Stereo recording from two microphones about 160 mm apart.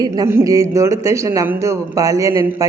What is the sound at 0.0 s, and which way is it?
Speech, 20° right (ahead or behind).